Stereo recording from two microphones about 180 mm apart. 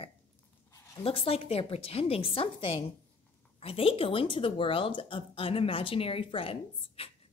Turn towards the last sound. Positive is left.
turn(degrees=30)  # may be behind; listen again after turning